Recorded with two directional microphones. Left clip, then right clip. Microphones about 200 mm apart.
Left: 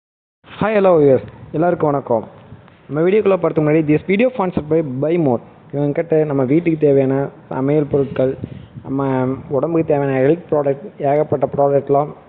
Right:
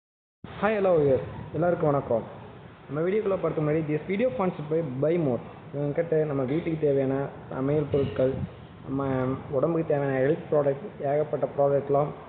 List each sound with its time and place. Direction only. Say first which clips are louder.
0.6 s a man's voice: left 10 dB; 45° left (ahead or behind)